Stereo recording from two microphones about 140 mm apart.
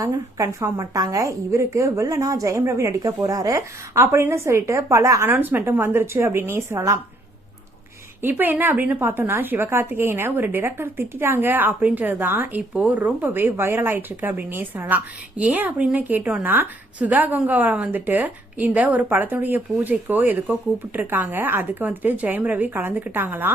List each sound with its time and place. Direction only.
0.0 s a woman's voice: 20° right (ahead or behind)
8.2 s speech: 15° right (ahead or behind)